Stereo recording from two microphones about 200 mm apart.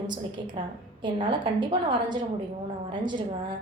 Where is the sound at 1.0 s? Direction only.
25° right (ahead or behind).